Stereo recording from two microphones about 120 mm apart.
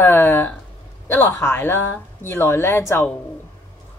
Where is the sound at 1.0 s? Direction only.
20° left (ahead or behind).